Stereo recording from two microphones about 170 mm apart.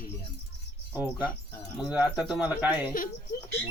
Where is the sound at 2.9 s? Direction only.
55° left (ahead or behind).